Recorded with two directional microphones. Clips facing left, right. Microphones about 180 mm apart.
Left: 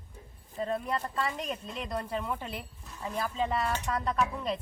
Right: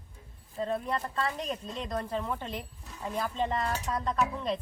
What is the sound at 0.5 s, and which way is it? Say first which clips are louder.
Speech: even; 10° left (ahead or behind).